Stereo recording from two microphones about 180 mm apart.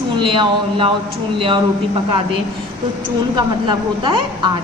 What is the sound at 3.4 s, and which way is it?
A woman's voice, 25° right (ahead or behind).